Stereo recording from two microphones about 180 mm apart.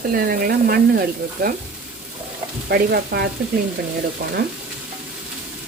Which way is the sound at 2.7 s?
60° right (ahead or behind).